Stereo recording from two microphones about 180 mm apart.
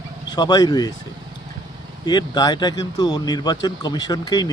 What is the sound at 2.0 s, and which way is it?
Speech, 25° left (ahead or behind).